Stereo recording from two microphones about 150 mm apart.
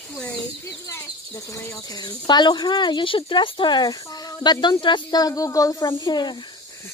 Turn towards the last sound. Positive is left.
turn(degrees=30)  # may be behind; listen again after turning